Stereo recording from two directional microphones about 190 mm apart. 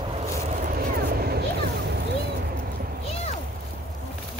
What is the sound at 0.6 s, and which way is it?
Vehicle, 50° right (ahead or behind).